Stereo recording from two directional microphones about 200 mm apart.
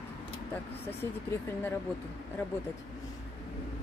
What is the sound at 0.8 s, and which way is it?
Speech, 10° left (ahead or behind).